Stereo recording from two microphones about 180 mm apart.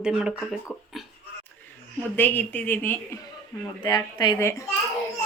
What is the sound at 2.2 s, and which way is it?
A woman's voice, 10° left (ahead or behind).